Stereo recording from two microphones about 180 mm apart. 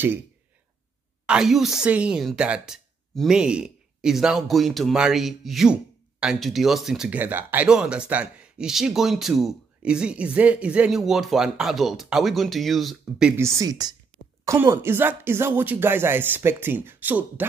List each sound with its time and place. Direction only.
1.2 s speech: 5° right (ahead or behind)
13.4 s a woman's voice: 15° right (ahead or behind)